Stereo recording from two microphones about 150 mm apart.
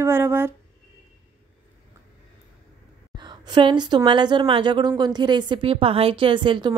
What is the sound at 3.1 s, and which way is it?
A woman's voice, 30° right (ahead or behind).